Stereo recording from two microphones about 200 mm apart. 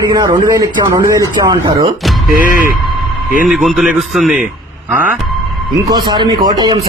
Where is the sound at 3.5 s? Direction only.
Centre (ahead or behind).